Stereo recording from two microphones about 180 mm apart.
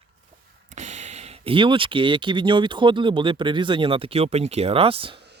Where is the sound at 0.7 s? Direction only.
40° right (ahead or behind).